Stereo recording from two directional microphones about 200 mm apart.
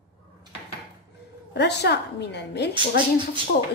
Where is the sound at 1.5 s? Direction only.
55° left (ahead or behind).